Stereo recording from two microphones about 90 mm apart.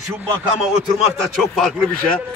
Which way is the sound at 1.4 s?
5° left (ahead or behind).